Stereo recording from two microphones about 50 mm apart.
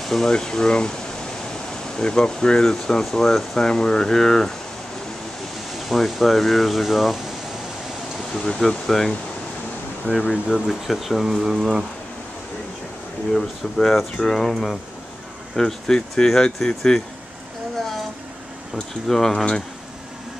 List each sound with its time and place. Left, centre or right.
0.0 s speech: centre
0.3 s speech: centre
2.0 s speech: centre
5.8 s speech: centre
8.3 s speech: centre
10.1 s speech: left
10.5 s speech: centre
13.3 s speech: centre
15.5 s speech: centre
18.8 s speech: centre